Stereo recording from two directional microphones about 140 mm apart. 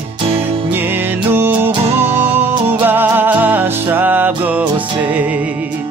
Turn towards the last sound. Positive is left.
turn(degrees=-10)  # may be behind; listen again after turning